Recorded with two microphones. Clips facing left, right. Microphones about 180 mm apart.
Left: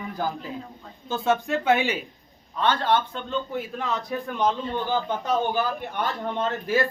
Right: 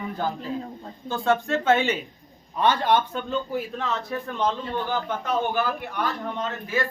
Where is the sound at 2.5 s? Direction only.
15° right (ahead or behind).